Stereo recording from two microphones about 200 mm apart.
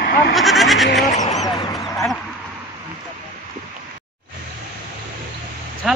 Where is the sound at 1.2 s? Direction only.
35° left (ahead or behind).